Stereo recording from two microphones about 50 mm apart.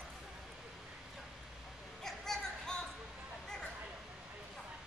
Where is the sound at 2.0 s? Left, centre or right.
Centre.